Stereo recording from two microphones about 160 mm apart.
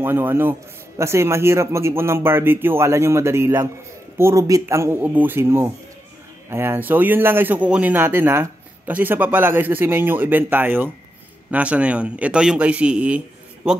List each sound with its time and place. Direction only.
0.0 s a man's voice: 15° right (ahead or behind)